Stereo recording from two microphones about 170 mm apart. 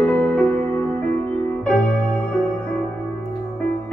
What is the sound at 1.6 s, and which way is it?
Music, 5° left (ahead or behind).